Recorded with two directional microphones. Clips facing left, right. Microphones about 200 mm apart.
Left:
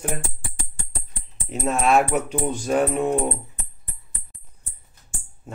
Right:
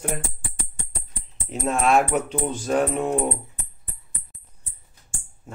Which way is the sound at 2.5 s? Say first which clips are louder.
Left 1 dB; 15° left (ahead or behind).